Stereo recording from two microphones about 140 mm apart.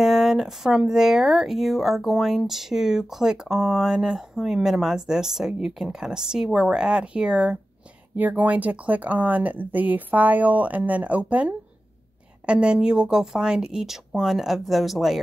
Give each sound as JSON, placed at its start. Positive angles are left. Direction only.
{"t": 0.0, "sound": "speech", "side_deg": 0}